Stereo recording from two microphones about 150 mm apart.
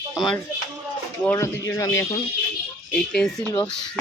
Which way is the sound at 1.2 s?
15° left (ahead or behind).